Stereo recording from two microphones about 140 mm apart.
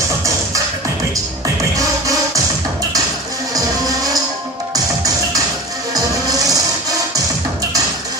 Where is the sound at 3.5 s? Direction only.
25° right (ahead or behind).